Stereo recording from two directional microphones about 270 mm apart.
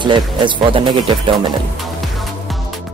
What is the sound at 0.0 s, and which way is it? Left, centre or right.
Speech, centre.